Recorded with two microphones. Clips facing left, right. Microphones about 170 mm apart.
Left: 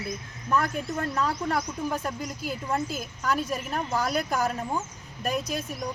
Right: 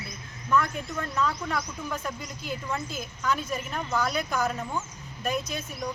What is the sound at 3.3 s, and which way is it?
Speech, 35° left (ahead or behind).